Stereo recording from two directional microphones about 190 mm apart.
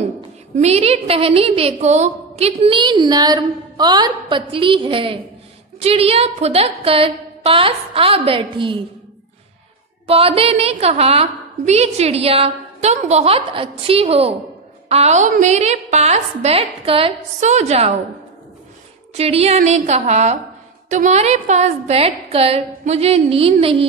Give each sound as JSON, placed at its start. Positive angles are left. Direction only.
{"t": 0.6, "sound": "a woman's voice", "side_deg": -35}
{"t": 10.0, "sound": "a woman's voice", "side_deg": -30}
{"t": 19.1, "sound": "a woman's voice", "side_deg": -35}